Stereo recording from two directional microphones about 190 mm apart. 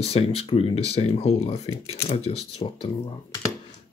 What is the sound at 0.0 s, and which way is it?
Speech, 30° left (ahead or behind).